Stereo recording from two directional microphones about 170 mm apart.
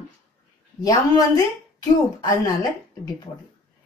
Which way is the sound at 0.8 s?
20° left (ahead or behind).